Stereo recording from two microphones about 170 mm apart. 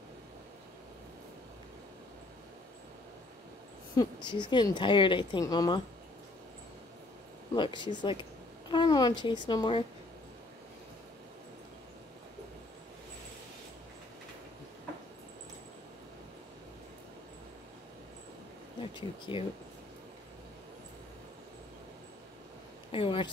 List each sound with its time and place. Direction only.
3.9 s speech: 25° left (ahead or behind)
7.5 s speech: 30° left (ahead or behind)
18.8 s speech: 30° left (ahead or behind)
22.8 s a sound: 30° left (ahead or behind)